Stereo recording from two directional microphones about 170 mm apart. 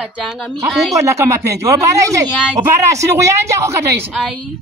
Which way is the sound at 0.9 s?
15° right (ahead or behind).